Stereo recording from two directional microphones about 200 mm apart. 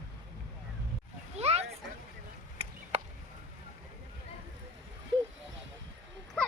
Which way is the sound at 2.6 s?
30° right (ahead or behind).